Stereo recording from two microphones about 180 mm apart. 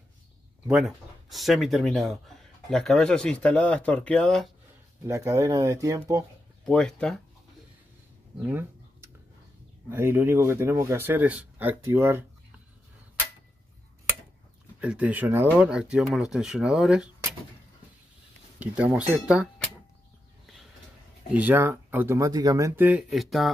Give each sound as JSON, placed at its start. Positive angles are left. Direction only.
{"t": 0.7, "sound": "speech", "side_deg": 0}
{"t": 5.0, "sound": "speech", "side_deg": -15}
{"t": 6.6, "sound": "speech", "side_deg": 5}
{"t": 8.4, "sound": "a sound", "side_deg": -10}
{"t": 9.8, "sound": "speech", "side_deg": -15}
{"t": 14.8, "sound": "speech", "side_deg": -5}
{"t": 18.6, "sound": "speech", "side_deg": -5}
{"t": 21.3, "sound": "speech", "side_deg": -10}